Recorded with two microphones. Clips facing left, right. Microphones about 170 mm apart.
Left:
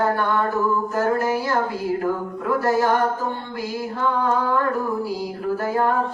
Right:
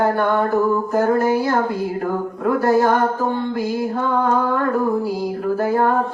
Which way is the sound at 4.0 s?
55° right (ahead or behind).